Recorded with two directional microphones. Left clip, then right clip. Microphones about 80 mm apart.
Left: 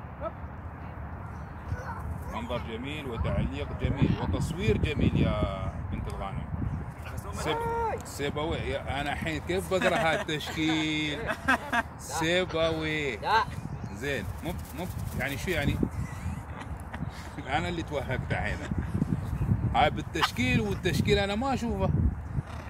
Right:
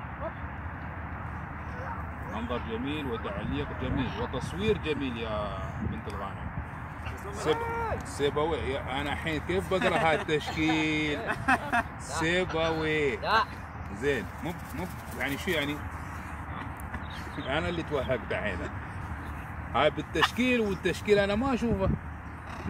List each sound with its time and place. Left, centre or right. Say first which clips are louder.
2.3 s speech: even; left
7.3 s speech: even; left
15.1 s speech: right 1 dB; left
17.5 s speech: even; left
19.7 s speech: even; left